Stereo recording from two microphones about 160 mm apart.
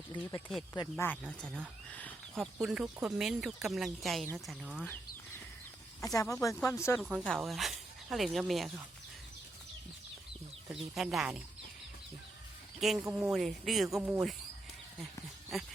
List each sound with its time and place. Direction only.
0.1 s speech: 25° left (ahead or behind)
0.9 s speech: 10° left (ahead or behind)
6.0 s speech: 20° left (ahead or behind)
7.0 s speech: centre (ahead or behind)
10.7 s speech: centre (ahead or behind)
12.8 s speech: centre (ahead or behind)
15.5 s speech: centre (ahead or behind)